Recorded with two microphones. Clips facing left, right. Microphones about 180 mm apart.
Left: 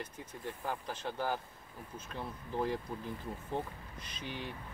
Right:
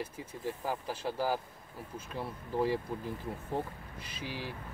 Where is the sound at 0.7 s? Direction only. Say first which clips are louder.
Right 2 dB; 5° right (ahead or behind).